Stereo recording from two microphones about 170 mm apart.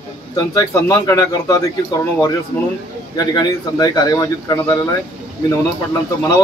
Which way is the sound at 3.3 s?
25° left (ahead or behind).